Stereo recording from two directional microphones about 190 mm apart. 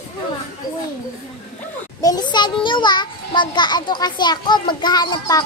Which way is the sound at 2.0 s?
20° left (ahead or behind).